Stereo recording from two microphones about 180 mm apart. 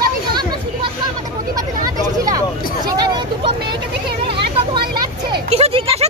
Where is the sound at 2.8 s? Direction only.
25° right (ahead or behind).